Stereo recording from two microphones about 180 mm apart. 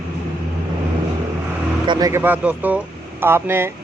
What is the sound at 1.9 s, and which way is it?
Speech, 20° right (ahead or behind).